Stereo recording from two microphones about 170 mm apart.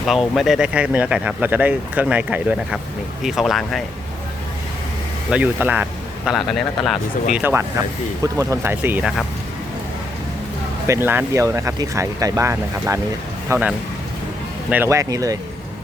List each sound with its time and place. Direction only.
0.0 s speech: centre (ahead or behind)
5.3 s speech: 10° right (ahead or behind)
7.3 s speech: 10° right (ahead or behind)
10.8 s speech: 15° right (ahead or behind)